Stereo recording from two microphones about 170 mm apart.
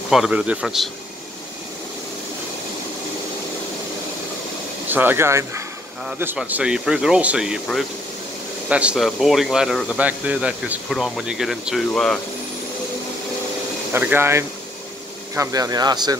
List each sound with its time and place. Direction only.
0.1 s speech: 5° right (ahead or behind)
4.8 s speech: 10° right (ahead or behind)
13.9 s speech: 10° right (ahead or behind)